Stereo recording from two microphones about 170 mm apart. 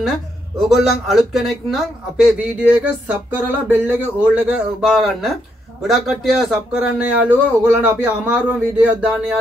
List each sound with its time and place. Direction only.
0.7 s a man's voice: centre (ahead or behind)